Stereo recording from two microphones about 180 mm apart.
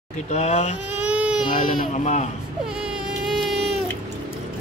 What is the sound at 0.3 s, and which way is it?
Speech, 40° left (ahead or behind).